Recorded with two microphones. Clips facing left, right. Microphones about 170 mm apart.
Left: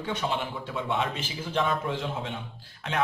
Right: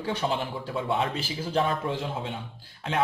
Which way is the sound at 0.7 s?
35° right (ahead or behind).